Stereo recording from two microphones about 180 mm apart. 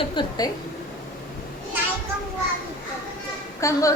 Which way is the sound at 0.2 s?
20° left (ahead or behind).